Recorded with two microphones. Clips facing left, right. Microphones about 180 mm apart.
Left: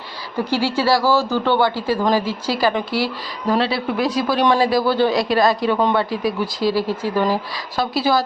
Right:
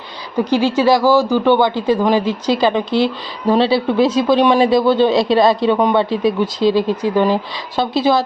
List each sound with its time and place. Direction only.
0.3 s speech: 15° right (ahead or behind)